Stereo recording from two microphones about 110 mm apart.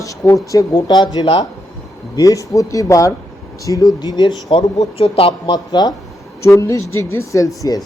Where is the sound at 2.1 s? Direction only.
30° left (ahead or behind).